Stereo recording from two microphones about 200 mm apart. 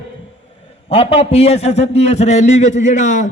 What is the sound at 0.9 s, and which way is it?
A man's voice, 30° left (ahead or behind).